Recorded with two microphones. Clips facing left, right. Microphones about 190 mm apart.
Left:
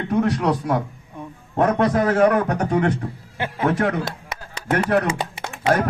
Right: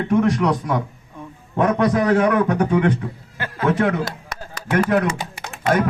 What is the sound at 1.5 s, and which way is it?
A man's voice, 45° left (ahead or behind).